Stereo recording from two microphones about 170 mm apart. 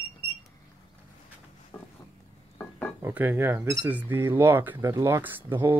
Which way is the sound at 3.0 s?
10° right (ahead or behind).